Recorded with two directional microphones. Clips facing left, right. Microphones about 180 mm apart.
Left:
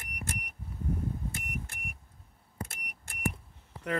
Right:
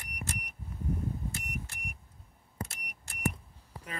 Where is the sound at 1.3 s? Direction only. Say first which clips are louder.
Left 1 dB; 55° left (ahead or behind).